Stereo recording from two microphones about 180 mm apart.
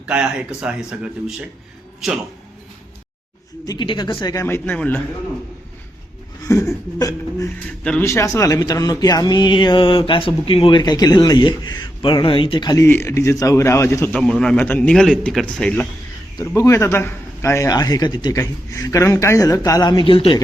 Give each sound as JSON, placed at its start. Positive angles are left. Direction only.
{"t": 0.0, "sound": "a man's voice", "side_deg": -5}
{"t": 2.0, "sound": "a man's voice", "side_deg": 0}
{"t": 3.7, "sound": "speech", "side_deg": 25}
{"t": 6.4, "sound": "a man's voice", "side_deg": 15}
{"t": 16.6, "sound": "speech", "side_deg": 15}